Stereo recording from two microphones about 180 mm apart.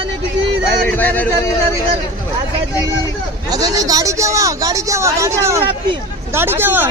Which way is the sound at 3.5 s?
20° right (ahead or behind).